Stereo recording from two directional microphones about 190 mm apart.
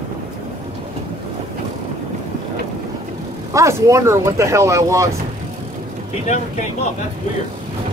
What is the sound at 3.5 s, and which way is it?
Speech, 15° right (ahead or behind).